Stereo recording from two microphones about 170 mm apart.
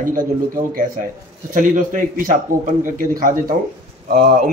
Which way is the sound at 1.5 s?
50° right (ahead or behind).